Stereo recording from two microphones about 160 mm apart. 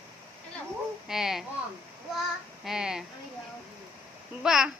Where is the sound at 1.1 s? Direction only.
5° right (ahead or behind).